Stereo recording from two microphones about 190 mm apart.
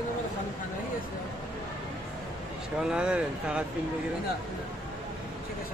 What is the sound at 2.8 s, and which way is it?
Speech, 5° right (ahead or behind).